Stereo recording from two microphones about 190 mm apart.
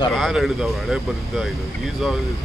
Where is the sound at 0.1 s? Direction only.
Centre (ahead or behind).